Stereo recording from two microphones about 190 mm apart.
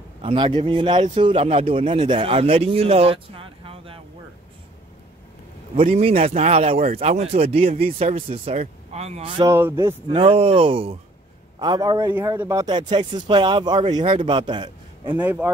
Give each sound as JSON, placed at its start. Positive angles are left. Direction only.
{"t": 0.2, "sound": "a man's voice", "side_deg": -25}
{"t": 5.8, "sound": "speech", "side_deg": -35}
{"t": 9.4, "sound": "speech", "side_deg": -15}
{"t": 10.0, "sound": "a man's voice", "side_deg": -30}
{"t": 15.1, "sound": "speech", "side_deg": -10}